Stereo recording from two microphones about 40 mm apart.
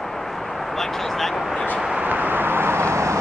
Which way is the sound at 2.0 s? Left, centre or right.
Right.